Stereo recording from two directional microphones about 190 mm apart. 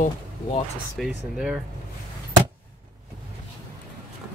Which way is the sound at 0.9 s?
5° right (ahead or behind).